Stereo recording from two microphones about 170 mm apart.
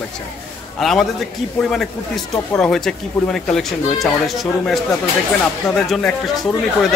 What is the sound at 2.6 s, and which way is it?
Speech, 5° left (ahead or behind).